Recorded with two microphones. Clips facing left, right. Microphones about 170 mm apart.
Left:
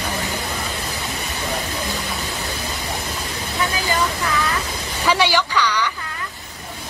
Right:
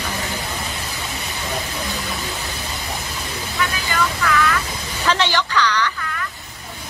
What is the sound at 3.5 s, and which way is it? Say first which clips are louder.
Vehicle: left 2 dB; 35° left (ahead or behind).